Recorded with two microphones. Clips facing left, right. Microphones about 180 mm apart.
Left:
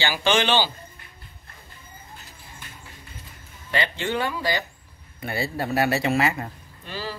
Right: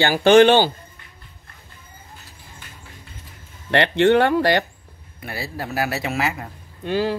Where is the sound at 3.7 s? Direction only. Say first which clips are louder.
Right 11 dB; 65° right (ahead or behind).